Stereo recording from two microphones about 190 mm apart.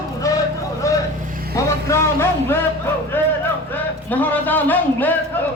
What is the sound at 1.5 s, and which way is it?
Speech, 15° left (ahead or behind).